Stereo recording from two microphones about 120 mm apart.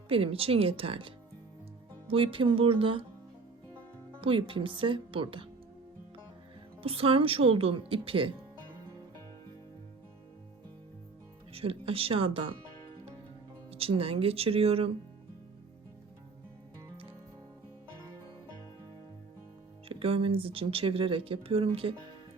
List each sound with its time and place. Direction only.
0.1 s speech: 50° right (ahead or behind)
4.2 s speech: 50° right (ahead or behind)
6.8 s speech: 50° right (ahead or behind)
11.5 s speech: 50° right (ahead or behind)
13.7 s speech: 55° right (ahead or behind)
19.9 s speech: 50° right (ahead or behind)